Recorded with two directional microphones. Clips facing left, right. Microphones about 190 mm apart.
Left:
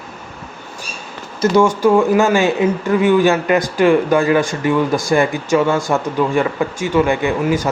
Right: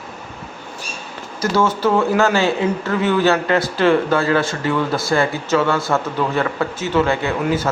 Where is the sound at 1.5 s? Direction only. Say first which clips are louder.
Left 4 dB; 15° left (ahead or behind).